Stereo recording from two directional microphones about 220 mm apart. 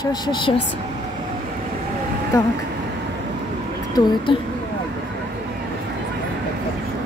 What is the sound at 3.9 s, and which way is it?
Speech, 20° left (ahead or behind).